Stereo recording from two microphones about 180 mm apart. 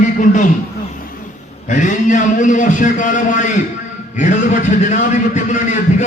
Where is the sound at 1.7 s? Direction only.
45° left (ahead or behind).